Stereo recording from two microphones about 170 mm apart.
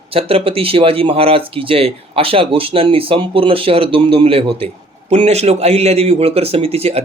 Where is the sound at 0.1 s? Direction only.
35° right (ahead or behind).